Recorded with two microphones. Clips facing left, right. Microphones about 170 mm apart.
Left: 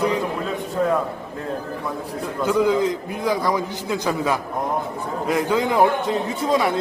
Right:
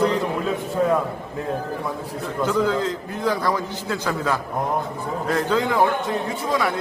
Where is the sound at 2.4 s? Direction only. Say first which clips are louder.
Left 3 dB; 15° left (ahead or behind).